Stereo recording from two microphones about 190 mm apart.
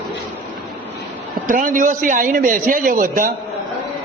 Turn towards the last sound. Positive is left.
turn(degrees=-45)  # may be behind; listen again after turning